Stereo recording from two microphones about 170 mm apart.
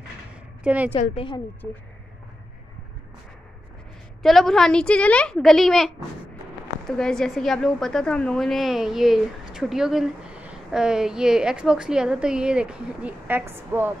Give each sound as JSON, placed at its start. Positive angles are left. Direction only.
{"t": 0.7, "sound": "a woman's voice", "side_deg": -10}
{"t": 1.1, "sound": "a woman's voice", "side_deg": 30}
{"t": 4.2, "sound": "a woman's voice", "side_deg": 0}
{"t": 6.9, "sound": "a woman's voice", "side_deg": 5}